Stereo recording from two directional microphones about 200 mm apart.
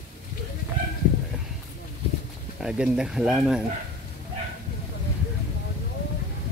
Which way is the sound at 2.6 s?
5° right (ahead or behind).